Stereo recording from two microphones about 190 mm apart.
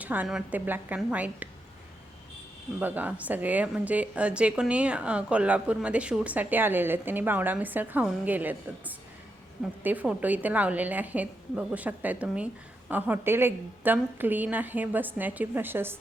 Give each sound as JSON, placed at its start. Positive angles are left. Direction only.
{"t": 0.0, "sound": "speech", "side_deg": -10}
{"t": 2.8, "sound": "speech", "side_deg": -10}